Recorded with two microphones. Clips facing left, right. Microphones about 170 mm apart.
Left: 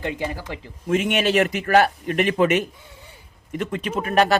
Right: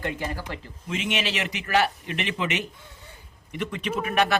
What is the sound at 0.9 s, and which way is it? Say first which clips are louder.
A man's voice: left 8 dB; 50° left (ahead or behind).